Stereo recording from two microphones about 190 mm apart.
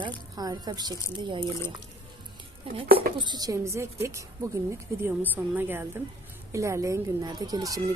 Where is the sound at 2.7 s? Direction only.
30° right (ahead or behind).